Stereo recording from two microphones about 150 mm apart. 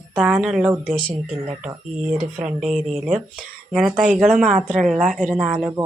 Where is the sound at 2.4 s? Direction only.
5° right (ahead or behind).